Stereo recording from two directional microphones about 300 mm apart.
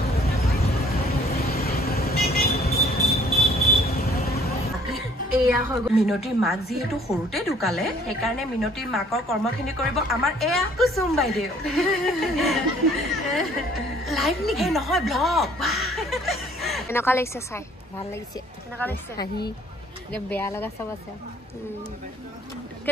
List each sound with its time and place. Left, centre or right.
0.9 s vehicle: left
5.4 s a woman's voice: centre
18.8 s speech: centre